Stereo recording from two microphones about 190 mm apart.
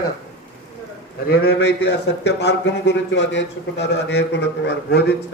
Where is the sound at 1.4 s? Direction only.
65° left (ahead or behind).